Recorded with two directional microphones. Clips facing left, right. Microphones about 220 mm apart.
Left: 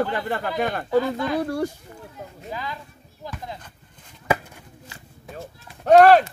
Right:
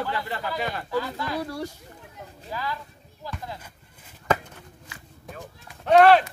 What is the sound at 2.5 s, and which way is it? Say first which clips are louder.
Speech: right 1 dB; 20° left (ahead or behind).